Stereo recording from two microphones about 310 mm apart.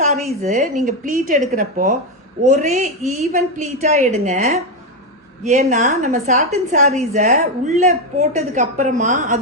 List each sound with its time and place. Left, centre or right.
0.0 s a woman's voice: right